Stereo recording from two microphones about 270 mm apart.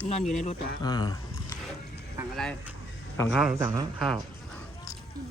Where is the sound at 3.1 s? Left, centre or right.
Centre.